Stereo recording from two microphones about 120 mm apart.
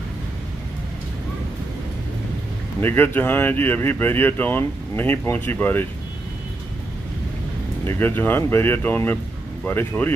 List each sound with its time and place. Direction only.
2.8 s speech: 15° left (ahead or behind)
7.8 s speech: 20° left (ahead or behind)